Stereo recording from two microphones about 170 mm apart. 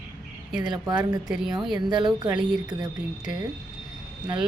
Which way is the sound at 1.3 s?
5° right (ahead or behind).